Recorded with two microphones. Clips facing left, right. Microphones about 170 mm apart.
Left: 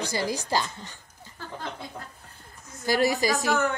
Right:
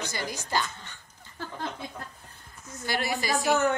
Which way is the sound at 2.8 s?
40° left (ahead or behind).